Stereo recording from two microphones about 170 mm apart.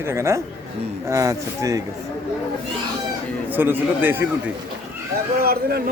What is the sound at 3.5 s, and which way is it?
Speech, 10° right (ahead or behind).